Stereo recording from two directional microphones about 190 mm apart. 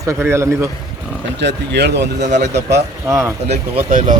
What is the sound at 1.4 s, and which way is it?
Speech, 60° right (ahead or behind).